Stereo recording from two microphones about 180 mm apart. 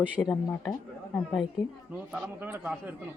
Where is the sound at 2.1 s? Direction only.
10° right (ahead or behind).